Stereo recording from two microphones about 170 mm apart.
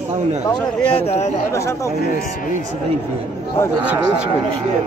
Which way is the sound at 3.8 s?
10° right (ahead or behind).